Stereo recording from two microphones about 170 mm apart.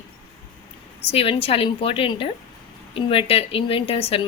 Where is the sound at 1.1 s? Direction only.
35° left (ahead or behind).